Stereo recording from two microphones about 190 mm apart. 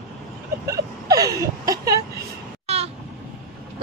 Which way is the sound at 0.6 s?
15° right (ahead or behind).